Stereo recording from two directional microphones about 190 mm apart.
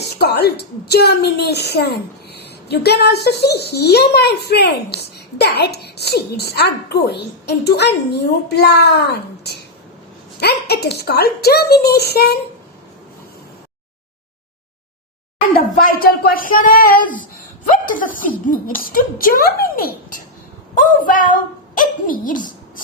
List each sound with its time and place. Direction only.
0.2 s a woman's voice: 60° left (ahead or behind)
9.4 s a sound: 60° left (ahead or behind)
10.4 s a woman's voice: 60° left (ahead or behind)
15.8 s a woman's voice: 50° left (ahead or behind)